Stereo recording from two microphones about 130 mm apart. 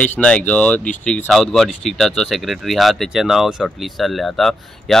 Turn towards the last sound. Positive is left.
turn(degrees=5)  # may be behind; listen again after turning